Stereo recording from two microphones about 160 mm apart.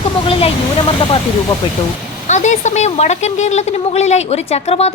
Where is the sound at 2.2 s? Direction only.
50° left (ahead or behind).